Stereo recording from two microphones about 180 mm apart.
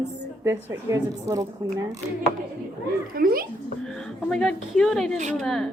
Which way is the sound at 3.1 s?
55° right (ahead or behind).